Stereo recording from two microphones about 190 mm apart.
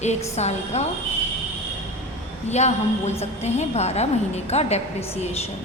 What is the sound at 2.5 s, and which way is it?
A woman's voice, 35° left (ahead or behind).